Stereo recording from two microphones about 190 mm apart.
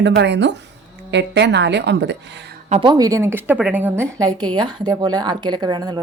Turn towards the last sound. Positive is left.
turn(degrees=-20)  # may be behind; listen again after turning